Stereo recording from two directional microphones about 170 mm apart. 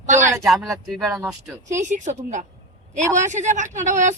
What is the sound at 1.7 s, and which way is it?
Speech, 45° right (ahead or behind).